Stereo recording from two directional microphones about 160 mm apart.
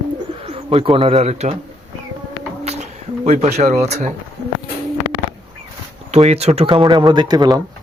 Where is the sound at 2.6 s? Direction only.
45° right (ahead or behind).